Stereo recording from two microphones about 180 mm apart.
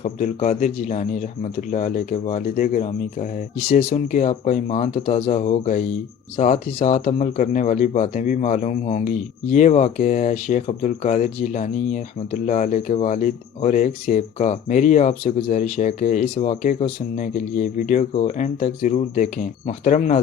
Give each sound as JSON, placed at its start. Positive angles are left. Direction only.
{"t": 0.0, "sound": "speech", "side_deg": 40}